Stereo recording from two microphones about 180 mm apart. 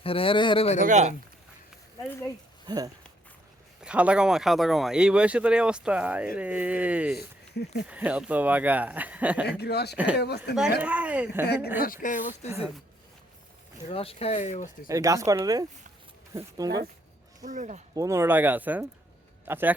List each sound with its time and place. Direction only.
0.0 s speech: 30° left (ahead or behind)
0.8 s speech: 40° right (ahead or behind)
2.6 s speech: 20° right (ahead or behind)
3.8 s speech: 5° right (ahead or behind)
9.5 s speech: 65° left (ahead or behind)
10.8 s speech: 5° right (ahead or behind)
11.4 s speech: 65° left (ahead or behind)
11.8 s speech: 50° left (ahead or behind)
12.5 s speech: 10° right (ahead or behind)
13.9 s speech: 30° left (ahead or behind)
14.8 s speech: 15° right (ahead or behind)
17.4 s speech: 45° right (ahead or behind)
17.9 s speech: 15° right (ahead or behind)